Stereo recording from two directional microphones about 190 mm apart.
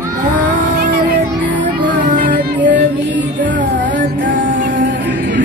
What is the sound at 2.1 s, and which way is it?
Music, 45° right (ahead or behind).